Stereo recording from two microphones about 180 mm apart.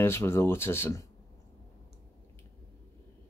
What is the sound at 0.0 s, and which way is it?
Speech, 15° left (ahead or behind).